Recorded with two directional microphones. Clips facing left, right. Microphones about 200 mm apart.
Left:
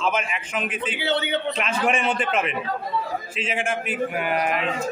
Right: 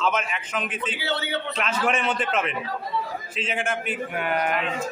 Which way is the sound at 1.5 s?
10° left (ahead or behind).